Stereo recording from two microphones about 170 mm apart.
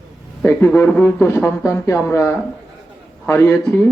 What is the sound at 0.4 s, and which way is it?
Speech, 15° left (ahead or behind).